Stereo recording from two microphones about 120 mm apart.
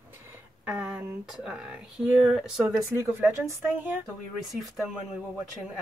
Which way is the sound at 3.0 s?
15° right (ahead or behind).